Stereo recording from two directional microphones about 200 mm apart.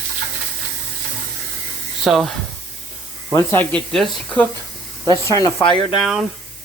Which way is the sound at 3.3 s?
10° left (ahead or behind).